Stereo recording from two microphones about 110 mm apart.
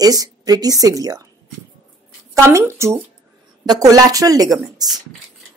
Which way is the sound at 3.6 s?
35° right (ahead or behind).